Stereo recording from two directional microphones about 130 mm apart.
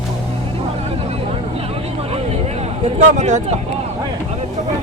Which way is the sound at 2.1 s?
55° right (ahead or behind).